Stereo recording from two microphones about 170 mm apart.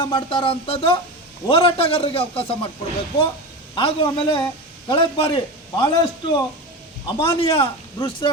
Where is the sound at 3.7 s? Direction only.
30° left (ahead or behind).